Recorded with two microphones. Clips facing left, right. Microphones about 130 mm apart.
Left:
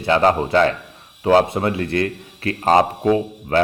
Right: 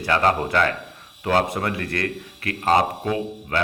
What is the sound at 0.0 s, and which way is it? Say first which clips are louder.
A man's voice: left 4 dB; 25° left (ahead or behind).